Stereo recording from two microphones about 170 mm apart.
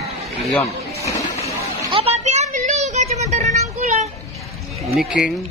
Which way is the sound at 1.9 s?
35° right (ahead or behind).